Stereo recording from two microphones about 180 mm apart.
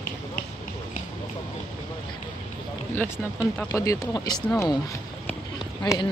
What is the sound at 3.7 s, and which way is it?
Speech, 15° left (ahead or behind).